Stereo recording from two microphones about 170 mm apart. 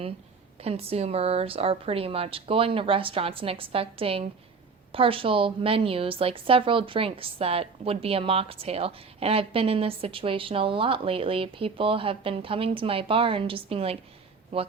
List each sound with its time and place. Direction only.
0.6 s a woman's voice: 35° right (ahead or behind)